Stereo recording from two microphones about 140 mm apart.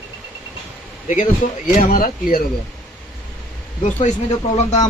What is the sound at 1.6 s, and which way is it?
Speech, 80° left.